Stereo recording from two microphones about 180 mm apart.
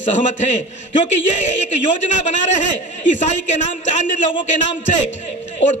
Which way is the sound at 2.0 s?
40° left (ahead or behind).